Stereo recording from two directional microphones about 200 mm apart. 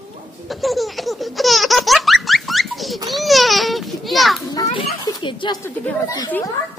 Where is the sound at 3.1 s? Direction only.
Centre (ahead or behind).